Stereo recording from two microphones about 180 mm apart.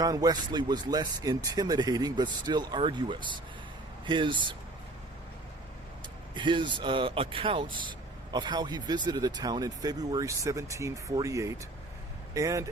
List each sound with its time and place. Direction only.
0.0 s speech: 20° right (ahead or behind)
6.3 s speech: 25° right (ahead or behind)